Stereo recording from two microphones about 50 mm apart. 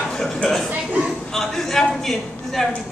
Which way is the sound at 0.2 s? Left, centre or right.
Centre.